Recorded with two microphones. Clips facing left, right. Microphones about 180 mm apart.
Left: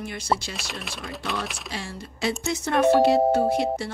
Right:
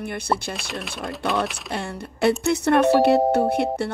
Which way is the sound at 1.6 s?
60° right (ahead or behind).